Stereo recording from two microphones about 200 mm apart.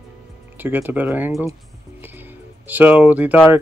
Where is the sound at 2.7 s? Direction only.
10° right (ahead or behind).